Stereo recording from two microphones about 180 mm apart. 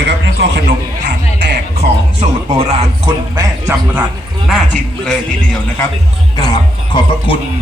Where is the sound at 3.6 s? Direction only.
15° right (ahead or behind).